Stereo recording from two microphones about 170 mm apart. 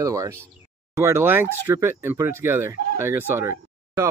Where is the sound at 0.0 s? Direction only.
20° right (ahead or behind).